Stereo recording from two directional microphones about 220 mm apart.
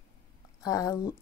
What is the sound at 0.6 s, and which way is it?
Speech, 15° left (ahead or behind).